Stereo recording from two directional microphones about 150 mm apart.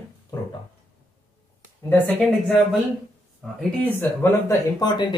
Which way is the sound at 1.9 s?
15° left (ahead or behind).